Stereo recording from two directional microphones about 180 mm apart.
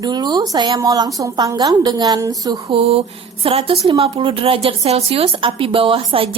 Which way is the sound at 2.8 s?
35° right (ahead or behind).